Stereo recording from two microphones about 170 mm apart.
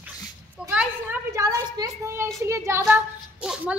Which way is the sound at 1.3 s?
20° right (ahead or behind).